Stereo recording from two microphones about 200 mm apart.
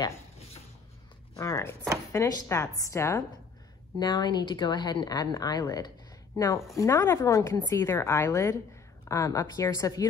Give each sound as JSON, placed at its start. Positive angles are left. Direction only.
{"t": 1.3, "sound": "a woman's voice", "side_deg": 15}